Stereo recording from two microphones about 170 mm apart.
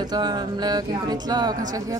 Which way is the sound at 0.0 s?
25° right (ahead or behind).